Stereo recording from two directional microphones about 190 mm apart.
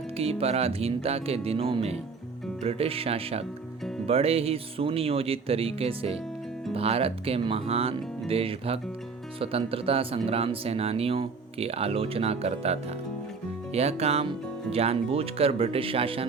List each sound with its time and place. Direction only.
0.2 s speech: 30° right (ahead or behind)